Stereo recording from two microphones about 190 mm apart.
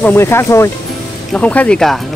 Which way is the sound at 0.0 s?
10° left (ahead or behind).